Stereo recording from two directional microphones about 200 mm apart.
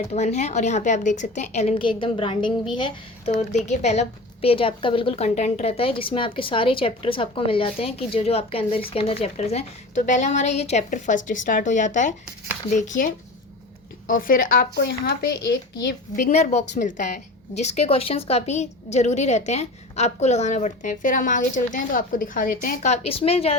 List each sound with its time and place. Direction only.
0.1 s a woman's voice: 35° left (ahead or behind)
3.5 s a woman's voice: 35° left (ahead or behind)
14.1 s a woman's voice: 45° left (ahead or behind)
16.2 s a woman's voice: 35° left (ahead or behind)